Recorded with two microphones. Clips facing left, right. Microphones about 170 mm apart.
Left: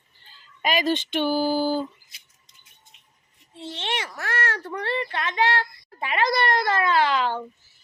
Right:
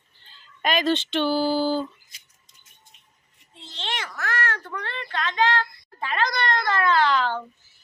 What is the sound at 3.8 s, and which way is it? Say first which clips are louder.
Baby cry: even; 25° left (ahead or behind).